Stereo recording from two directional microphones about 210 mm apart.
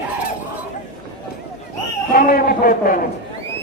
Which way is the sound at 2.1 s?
45° left (ahead or behind).